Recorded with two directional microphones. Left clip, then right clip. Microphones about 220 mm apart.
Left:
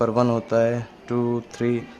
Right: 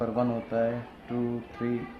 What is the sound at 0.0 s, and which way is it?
Speech, 50° left (ahead or behind).